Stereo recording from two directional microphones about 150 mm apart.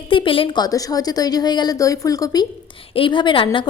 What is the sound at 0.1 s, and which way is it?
A woman's voice, 35° left (ahead or behind).